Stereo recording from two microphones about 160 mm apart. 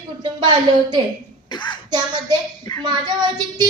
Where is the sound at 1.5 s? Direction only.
30° left (ahead or behind).